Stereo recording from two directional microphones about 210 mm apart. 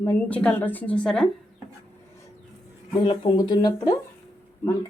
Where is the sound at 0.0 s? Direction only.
10° left (ahead or behind).